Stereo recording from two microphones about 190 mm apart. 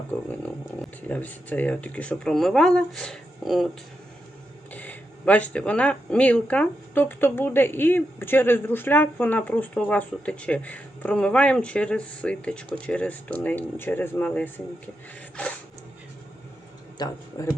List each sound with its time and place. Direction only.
1.0 s speech: 10° left (ahead or behind)
4.7 s speech: 10° left (ahead or behind)
17.0 s speech: 15° left (ahead or behind)